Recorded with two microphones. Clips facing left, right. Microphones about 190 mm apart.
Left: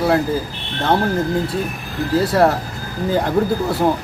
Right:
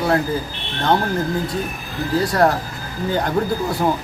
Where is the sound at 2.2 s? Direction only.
5° left (ahead or behind).